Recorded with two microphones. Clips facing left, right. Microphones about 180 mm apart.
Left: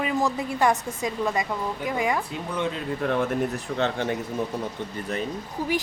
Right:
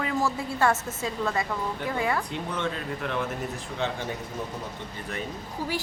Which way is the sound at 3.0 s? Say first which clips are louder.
Left 6 dB; 50° left (ahead or behind).